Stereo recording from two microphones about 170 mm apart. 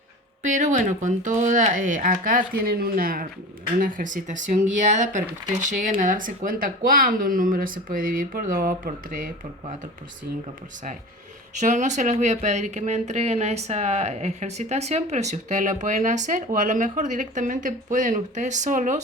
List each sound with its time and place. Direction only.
0.4 s speech: 45° right (ahead or behind)
11.6 s speech: 45° right (ahead or behind)